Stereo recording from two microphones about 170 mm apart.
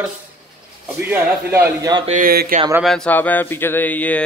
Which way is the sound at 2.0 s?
55° right (ahead or behind).